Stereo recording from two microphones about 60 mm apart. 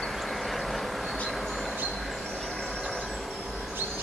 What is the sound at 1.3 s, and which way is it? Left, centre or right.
Train, centre.